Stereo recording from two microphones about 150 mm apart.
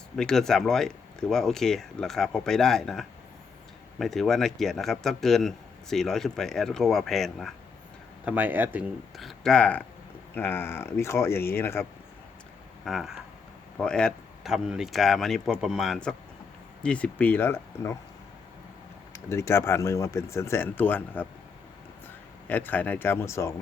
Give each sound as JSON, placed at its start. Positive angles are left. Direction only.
{"t": 0.2, "sound": "speech", "side_deg": 5}
{"t": 8.2, "sound": "speech", "side_deg": -10}
{"t": 9.1, "sound": "speech", "side_deg": 0}
{"t": 12.8, "sound": "speech", "side_deg": 0}
{"t": 19.1, "sound": "speech", "side_deg": 20}
{"t": 22.4, "sound": "speech", "side_deg": 10}